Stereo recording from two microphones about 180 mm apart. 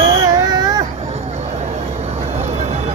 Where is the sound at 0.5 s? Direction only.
20° right (ahead or behind).